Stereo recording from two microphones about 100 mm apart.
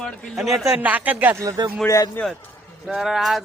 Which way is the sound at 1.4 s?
40° right (ahead or behind).